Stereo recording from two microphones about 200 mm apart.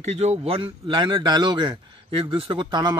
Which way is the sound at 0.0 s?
35° right (ahead or behind).